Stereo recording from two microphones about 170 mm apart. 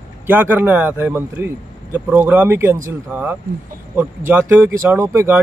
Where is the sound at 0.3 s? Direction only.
10° right (ahead or behind).